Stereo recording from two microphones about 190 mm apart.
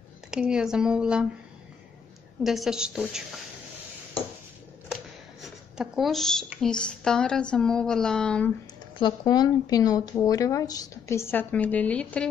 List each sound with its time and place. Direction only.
0.3 s speech: 5° right (ahead or behind)
2.4 s speech: centre (ahead or behind)
5.4 s speech: centre (ahead or behind)
9.0 s a woman's voice: 20° left (ahead or behind); by 12.3 s 5° left (ahead or behind)